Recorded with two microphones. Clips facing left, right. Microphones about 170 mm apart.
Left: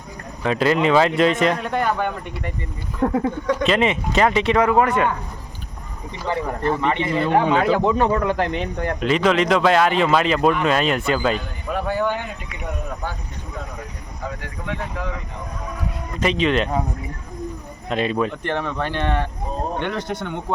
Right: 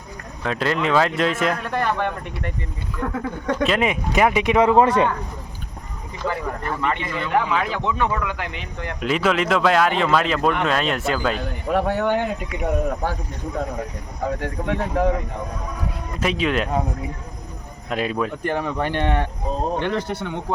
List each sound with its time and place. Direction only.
0.4 s a man's voice: 5° left (ahead or behind)
1.6 s speech: 15° left (ahead or behind)
3.0 s speech: 35° left (ahead or behind)
3.6 s speech: 5° right (ahead or behind)
4.6 s a man's voice: 25° right (ahead or behind)
6.2 s speech: 30° left (ahead or behind)
9.0 s a man's voice: 5° right (ahead or behind)
11.7 s speech: 70° right (ahead or behind)
14.3 s speech: 50° right (ahead or behind)
16.2 s a man's voice: 5° right (ahead or behind)
17.8 s speech: 5° right (ahead or behind)
19.8 s a man's voice: 5° right (ahead or behind)